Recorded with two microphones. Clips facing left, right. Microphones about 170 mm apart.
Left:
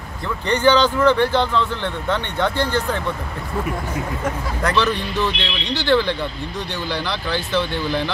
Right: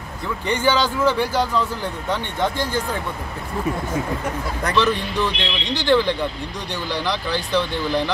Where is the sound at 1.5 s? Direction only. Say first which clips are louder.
Left 1 dB; 40° right (ahead or behind).